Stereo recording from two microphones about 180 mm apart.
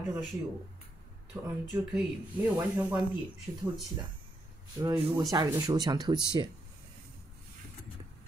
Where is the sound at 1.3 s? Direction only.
15° right (ahead or behind).